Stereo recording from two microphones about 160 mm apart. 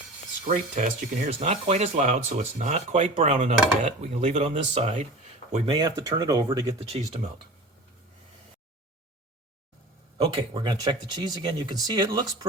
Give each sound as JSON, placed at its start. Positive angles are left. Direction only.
{"t": 0.4, "sound": "speech", "side_deg": -55}
{"t": 5.8, "sound": "speech", "side_deg": -25}
{"t": 7.0, "sound": "speech", "side_deg": -40}
{"t": 10.2, "sound": "speech", "side_deg": -30}